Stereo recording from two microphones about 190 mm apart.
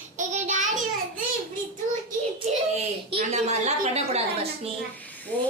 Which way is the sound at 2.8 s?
35° right (ahead or behind).